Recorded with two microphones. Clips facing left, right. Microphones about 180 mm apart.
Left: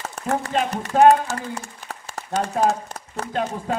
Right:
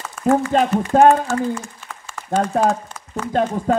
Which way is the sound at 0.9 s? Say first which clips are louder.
Right 2 dB; 45° right (ahead or behind).